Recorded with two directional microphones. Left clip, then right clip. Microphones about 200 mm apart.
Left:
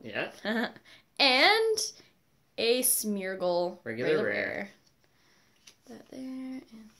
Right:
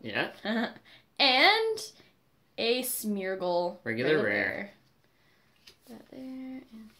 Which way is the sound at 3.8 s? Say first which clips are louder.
Right 1 dB; 25° right (ahead or behind).